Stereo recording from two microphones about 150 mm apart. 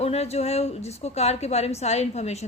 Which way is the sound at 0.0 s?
45° left (ahead or behind).